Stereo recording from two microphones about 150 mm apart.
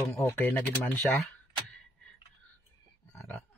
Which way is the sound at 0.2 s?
20° left (ahead or behind).